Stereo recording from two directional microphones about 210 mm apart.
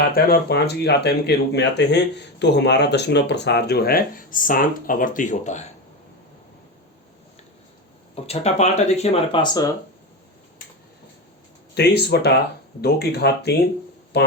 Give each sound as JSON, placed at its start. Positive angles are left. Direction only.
{"t": 0.1, "sound": "speech", "side_deg": 50}
{"t": 8.1, "sound": "speech", "side_deg": 30}
{"t": 11.7, "sound": "speech", "side_deg": 50}